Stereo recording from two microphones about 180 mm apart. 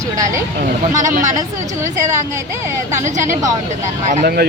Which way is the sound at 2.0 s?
15° right (ahead or behind).